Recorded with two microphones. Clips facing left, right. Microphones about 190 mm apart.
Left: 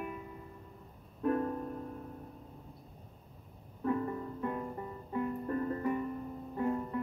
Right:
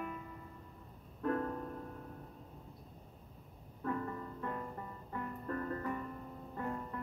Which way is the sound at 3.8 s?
20° left (ahead or behind).